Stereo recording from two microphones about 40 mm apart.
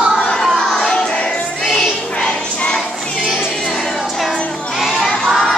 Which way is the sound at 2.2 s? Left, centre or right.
Left.